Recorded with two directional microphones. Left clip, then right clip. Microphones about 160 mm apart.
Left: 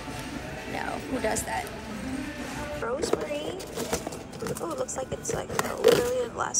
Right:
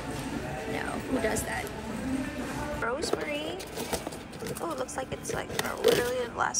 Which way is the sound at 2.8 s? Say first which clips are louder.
Left 3 dB; 15° left (ahead or behind).